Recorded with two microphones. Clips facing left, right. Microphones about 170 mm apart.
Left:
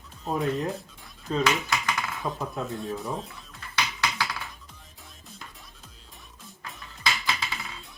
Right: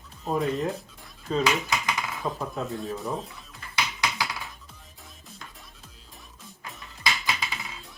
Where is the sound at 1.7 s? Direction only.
10° right (ahead or behind).